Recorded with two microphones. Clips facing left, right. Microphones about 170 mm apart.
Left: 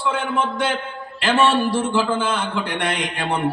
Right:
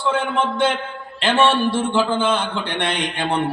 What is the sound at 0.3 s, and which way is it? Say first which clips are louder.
A man's voice: right 2 dB; 25° right (ahead or behind).